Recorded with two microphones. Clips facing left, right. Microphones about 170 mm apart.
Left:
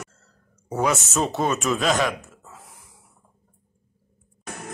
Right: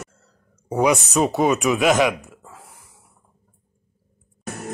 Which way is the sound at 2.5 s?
5° right (ahead or behind).